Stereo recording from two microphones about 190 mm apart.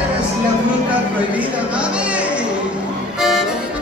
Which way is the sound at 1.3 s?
5° right (ahead or behind).